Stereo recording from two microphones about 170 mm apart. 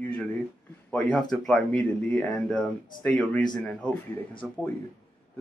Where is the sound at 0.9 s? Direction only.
5° left (ahead or behind).